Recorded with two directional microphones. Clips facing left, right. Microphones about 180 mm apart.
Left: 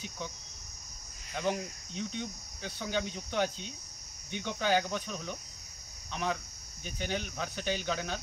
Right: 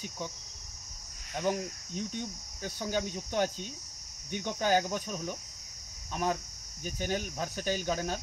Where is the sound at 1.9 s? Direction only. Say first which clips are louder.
Even; 45° right (ahead or behind).